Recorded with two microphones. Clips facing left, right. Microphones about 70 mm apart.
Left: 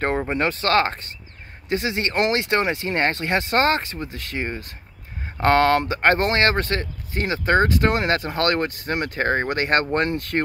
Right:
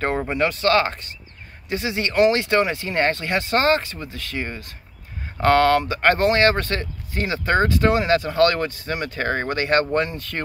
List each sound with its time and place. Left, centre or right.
0.1 s speech: centre
0.4 s speech: left
9.9 s speech: left